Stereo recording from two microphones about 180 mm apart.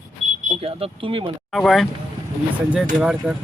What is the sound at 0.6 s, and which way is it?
Speech, 30° right (ahead or behind).